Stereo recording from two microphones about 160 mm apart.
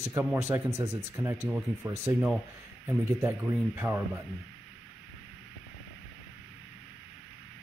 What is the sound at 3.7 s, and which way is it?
Speech, 10° right (ahead or behind).